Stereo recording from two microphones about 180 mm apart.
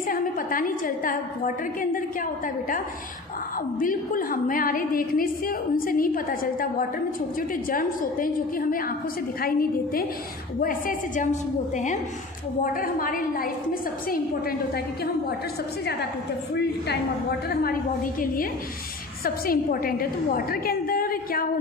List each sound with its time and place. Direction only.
0.0 s a woman's voice: 50° left (ahead or behind)
3.8 s a woman's voice: 50° left (ahead or behind)
16.5 s a woman's voice: 65° left (ahead or behind)
18.2 s a woman's voice: 50° left (ahead or behind)